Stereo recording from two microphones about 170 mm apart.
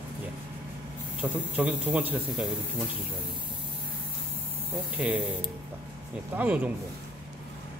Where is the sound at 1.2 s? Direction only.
10° right (ahead or behind).